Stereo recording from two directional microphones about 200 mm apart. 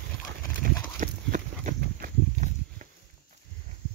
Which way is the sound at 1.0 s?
40° right (ahead or behind).